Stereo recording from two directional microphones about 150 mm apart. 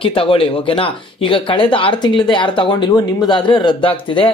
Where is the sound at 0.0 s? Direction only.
35° left (ahead or behind).